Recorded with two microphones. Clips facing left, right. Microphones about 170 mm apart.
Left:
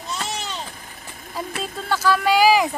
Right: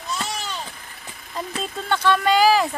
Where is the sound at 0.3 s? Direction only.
20° left (ahead or behind).